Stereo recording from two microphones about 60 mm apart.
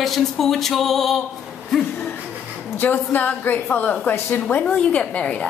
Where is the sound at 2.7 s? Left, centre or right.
Left.